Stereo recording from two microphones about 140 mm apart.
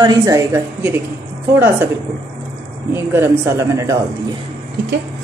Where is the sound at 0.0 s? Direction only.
25° right (ahead or behind).